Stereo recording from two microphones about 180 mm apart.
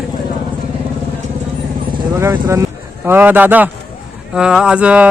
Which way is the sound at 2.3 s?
20° right (ahead or behind).